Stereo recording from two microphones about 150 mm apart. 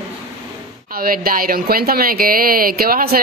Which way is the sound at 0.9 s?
75° right (ahead or behind).